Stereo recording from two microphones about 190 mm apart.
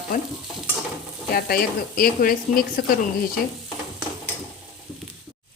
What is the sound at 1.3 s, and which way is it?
A woman's voice, 50° left (ahead or behind).